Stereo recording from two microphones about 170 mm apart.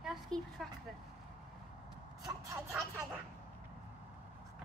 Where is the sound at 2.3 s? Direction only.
20° right (ahead or behind).